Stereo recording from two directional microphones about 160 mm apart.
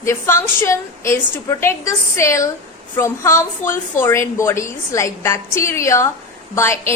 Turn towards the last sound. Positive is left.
turn(degrees=15)  # may be behind; listen again after turning